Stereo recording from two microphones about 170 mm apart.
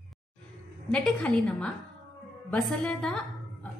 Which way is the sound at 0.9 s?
5° left (ahead or behind).